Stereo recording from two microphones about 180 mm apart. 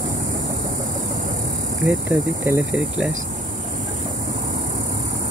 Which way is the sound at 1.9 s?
10° right (ahead or behind).